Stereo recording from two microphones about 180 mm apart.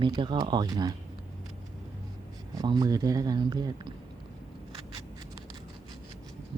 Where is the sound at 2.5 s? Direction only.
20° right (ahead or behind).